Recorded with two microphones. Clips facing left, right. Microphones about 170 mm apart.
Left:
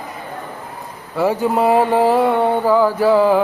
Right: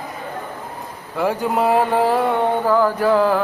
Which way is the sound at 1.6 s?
10° left (ahead or behind).